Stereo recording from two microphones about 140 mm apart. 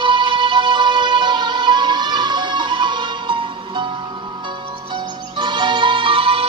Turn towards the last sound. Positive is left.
turn(degrees=-40)  # may be behind; listen again after turning